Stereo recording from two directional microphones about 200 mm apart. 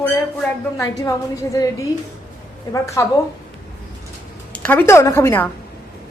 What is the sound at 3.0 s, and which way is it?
Speech, 15° left (ahead or behind).